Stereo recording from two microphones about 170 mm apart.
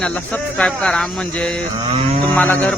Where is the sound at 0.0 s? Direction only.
10° left (ahead or behind).